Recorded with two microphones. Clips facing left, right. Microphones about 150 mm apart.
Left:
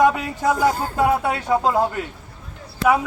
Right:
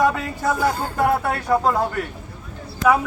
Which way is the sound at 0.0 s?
20° left (ahead or behind).